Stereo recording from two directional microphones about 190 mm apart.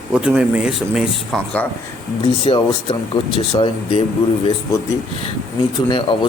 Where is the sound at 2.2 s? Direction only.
25° left (ahead or behind).